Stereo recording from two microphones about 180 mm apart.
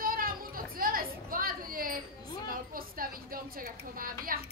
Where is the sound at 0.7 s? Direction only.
50° right (ahead or behind).